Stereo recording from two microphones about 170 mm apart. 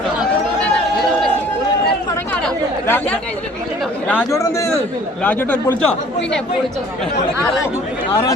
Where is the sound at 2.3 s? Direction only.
5° left (ahead or behind).